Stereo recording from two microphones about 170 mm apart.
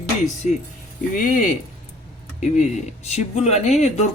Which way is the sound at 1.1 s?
50° left (ahead or behind).